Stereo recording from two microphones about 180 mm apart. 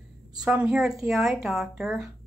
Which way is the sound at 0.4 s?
5° right (ahead or behind).